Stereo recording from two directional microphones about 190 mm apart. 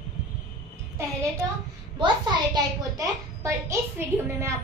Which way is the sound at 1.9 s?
20° right (ahead or behind).